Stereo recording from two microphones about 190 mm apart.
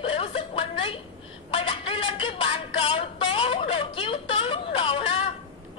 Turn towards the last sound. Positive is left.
turn(degrees=30)  # may be behind; listen again after turning